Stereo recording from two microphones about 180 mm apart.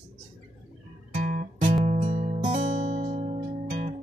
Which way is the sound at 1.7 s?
35° right (ahead or behind).